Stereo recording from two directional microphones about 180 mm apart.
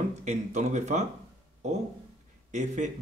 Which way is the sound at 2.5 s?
40° right (ahead or behind).